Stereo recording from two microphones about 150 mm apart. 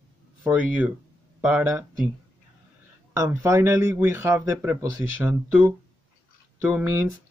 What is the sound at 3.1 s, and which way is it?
A man's voice, 20° right (ahead or behind).